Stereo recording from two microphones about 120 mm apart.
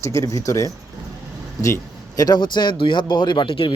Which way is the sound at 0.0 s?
25° left (ahead or behind).